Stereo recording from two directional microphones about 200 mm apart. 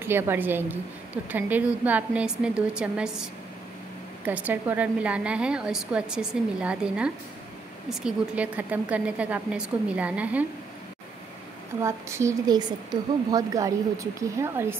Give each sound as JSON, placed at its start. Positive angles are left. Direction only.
{"t": 0.0, "sound": "a woman's voice", "side_deg": -10}
{"t": 11.8, "sound": "a woman's voice", "side_deg": -15}